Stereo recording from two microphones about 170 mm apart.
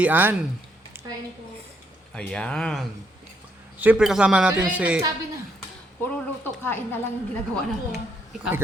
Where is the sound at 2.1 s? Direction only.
5° left (ahead or behind).